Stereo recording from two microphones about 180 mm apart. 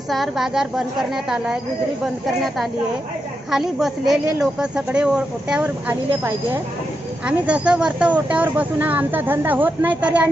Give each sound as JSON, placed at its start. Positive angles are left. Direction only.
{"t": 0.1, "sound": "speech", "side_deg": 0}